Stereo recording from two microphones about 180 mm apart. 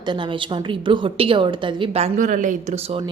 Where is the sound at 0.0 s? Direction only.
25° right (ahead or behind).